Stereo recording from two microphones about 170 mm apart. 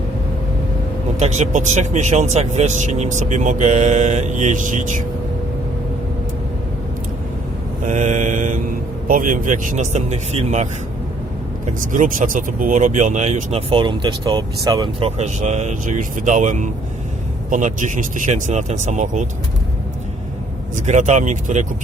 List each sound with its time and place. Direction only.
1.2 s speech: 45° right (ahead or behind)
7.9 s speech: 45° right (ahead or behind)
20.7 s speech: 45° right (ahead or behind)